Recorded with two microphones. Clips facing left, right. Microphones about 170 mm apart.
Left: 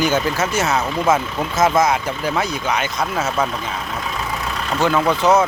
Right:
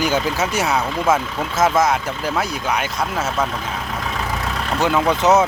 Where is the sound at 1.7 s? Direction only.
5° right (ahead or behind).